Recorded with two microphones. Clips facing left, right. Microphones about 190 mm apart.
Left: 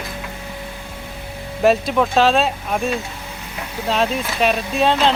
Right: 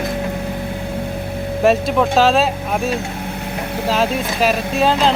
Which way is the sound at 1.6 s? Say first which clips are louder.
Right 1 dB; centre (ahead or behind).